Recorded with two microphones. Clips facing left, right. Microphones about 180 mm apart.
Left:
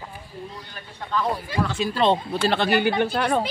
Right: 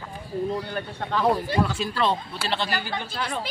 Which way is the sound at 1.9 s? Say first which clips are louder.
Left 5 dB; 25° left (ahead or behind).